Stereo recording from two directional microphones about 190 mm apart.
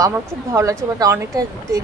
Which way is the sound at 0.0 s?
15° right (ahead or behind).